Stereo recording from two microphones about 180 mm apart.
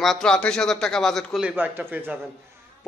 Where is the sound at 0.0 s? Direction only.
Centre (ahead or behind).